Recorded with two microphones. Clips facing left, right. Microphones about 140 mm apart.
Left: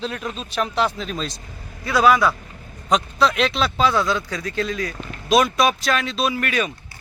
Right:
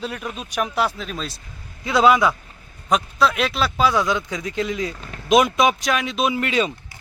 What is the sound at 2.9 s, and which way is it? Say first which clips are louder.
Speech: even; 5° right (ahead or behind).